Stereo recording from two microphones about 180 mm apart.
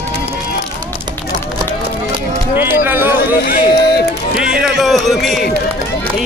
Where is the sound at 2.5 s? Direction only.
10° right (ahead or behind).